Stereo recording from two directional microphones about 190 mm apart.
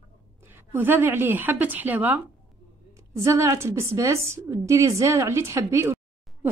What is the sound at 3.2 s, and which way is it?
A woman's voice, 15° right (ahead or behind).